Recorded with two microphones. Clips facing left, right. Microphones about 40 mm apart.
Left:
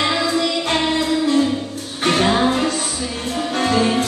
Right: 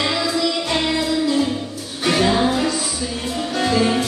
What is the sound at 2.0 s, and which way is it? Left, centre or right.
Music, left.